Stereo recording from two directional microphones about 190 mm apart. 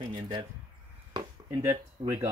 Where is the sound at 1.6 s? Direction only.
10° right (ahead or behind).